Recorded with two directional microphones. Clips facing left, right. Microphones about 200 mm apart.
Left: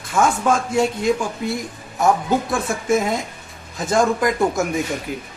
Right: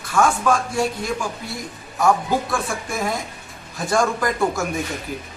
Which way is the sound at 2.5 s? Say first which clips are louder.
Left 6 dB; 20° left (ahead or behind).